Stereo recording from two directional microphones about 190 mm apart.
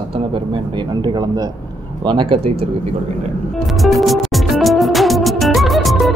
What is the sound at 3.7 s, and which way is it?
Music, centre (ahead or behind).